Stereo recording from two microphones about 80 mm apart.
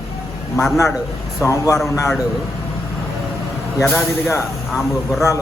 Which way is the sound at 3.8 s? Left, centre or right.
Centre.